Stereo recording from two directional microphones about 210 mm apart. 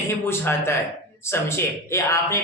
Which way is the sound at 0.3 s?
10° left (ahead or behind).